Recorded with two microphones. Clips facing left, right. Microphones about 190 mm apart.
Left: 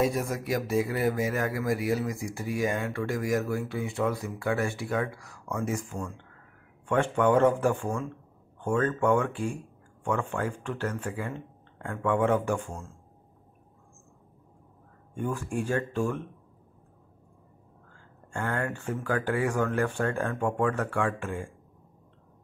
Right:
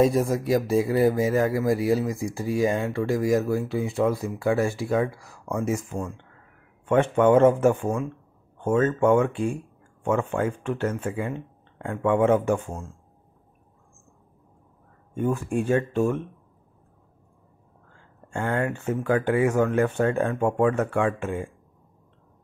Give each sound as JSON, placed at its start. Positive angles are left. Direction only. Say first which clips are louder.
{"t": 0.0, "sound": "speech", "louder": "right 7 dB", "side_deg": -30}
{"t": 15.1, "sound": "speech", "louder": "right 6 dB", "side_deg": -20}
{"t": 18.3, "sound": "speech", "louder": "right 5 dB", "side_deg": -25}